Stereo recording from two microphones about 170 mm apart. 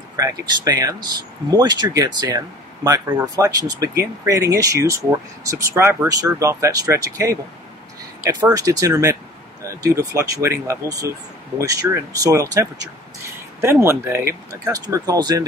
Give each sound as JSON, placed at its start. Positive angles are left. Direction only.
{"t": 0.1, "sound": "speech", "side_deg": -20}